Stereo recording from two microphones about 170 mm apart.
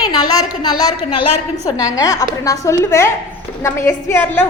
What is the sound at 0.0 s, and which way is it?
A woman's voice, 20° left (ahead or behind).